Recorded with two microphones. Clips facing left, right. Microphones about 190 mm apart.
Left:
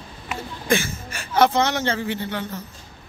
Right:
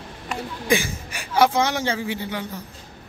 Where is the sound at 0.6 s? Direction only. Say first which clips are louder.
Even; 15° right (ahead or behind).